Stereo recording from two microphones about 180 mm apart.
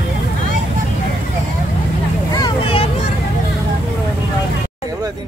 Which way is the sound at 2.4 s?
25° left (ahead or behind).